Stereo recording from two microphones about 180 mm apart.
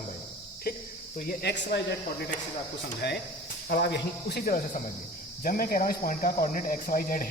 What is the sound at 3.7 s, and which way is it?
Speech, 65° left (ahead or behind).